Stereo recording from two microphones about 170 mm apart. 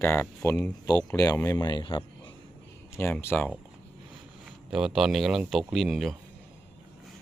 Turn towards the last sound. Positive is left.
turn(degrees=0)  # may be behind; listen again after turning